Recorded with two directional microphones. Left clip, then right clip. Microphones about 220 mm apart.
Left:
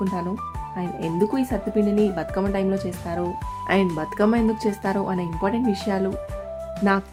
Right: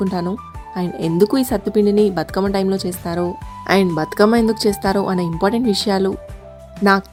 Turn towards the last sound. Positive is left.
turn(degrees=-30)  # may be behind; listen again after turning